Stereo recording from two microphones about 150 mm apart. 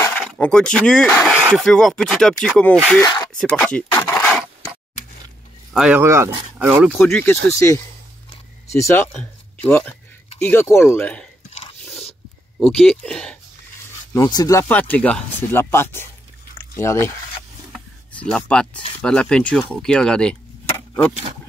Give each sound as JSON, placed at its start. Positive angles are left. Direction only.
{"t": 0.1, "sound": "speech", "side_deg": 5}
{"t": 3.0, "sound": "speech", "side_deg": 20}
{"t": 3.3, "sound": "a sound", "side_deg": 5}
{"t": 5.7, "sound": "speech", "side_deg": -5}
{"t": 5.9, "sound": "speech", "side_deg": -20}
{"t": 6.9, "sound": "speech", "side_deg": 10}
{"t": 11.8, "sound": "a sound", "side_deg": 0}
{"t": 12.5, "sound": "speech", "side_deg": 5}
{"t": 14.1, "sound": "speech", "side_deg": 25}
{"t": 14.7, "sound": "speech", "side_deg": 10}
{"t": 17.7, "sound": "a sound", "side_deg": 5}
{"t": 18.9, "sound": "speech", "side_deg": 5}
{"t": 20.7, "sound": "a sound", "side_deg": 10}